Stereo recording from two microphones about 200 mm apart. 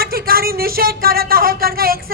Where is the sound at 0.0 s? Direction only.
50° right (ahead or behind).